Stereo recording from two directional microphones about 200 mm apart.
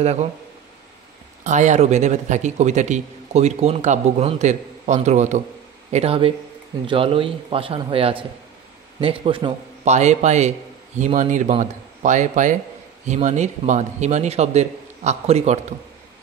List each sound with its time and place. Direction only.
0.0 s a man's voice: 35° right (ahead or behind)
1.4 s a man's voice: 35° right (ahead or behind)